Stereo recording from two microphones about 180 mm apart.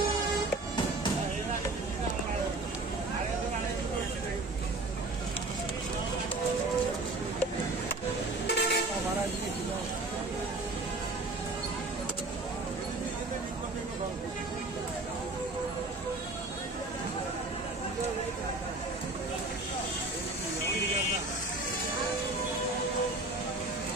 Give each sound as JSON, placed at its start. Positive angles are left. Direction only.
{"t": 8.5, "sound": "vehicle", "side_deg": 65}